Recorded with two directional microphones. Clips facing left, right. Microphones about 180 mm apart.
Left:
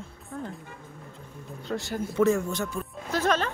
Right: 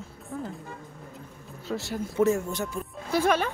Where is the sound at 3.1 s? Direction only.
10° right (ahead or behind).